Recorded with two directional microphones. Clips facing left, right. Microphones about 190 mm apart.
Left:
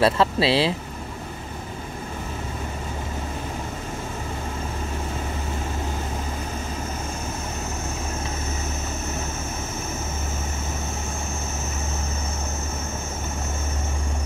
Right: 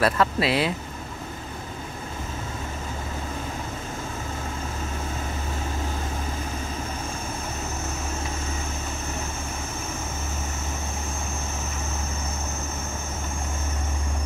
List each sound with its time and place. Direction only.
0.0 s speech: 30° left (ahead or behind)